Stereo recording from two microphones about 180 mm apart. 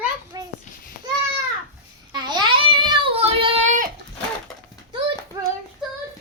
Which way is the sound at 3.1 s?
30° right (ahead or behind).